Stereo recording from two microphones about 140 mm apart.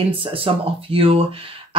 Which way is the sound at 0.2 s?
40° right (ahead or behind).